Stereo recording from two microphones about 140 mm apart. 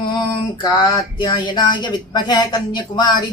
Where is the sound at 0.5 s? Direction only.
30° left (ahead or behind).